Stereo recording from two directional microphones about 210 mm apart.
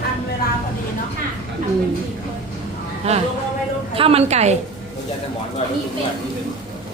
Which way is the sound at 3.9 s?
25° right (ahead or behind).